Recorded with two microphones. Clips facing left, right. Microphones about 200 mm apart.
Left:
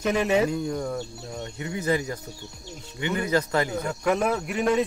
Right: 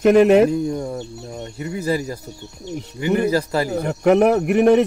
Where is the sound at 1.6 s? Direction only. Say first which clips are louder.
Right 3 dB; 35° right (ahead or behind).